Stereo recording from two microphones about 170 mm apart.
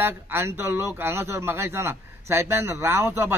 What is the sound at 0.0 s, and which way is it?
Speech, 15° right (ahead or behind).